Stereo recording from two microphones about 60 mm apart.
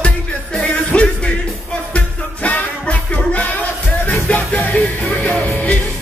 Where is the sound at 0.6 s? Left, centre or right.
Centre.